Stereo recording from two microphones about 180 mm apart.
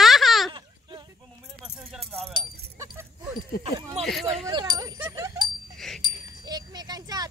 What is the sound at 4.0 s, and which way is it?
Speech, centre (ahead or behind).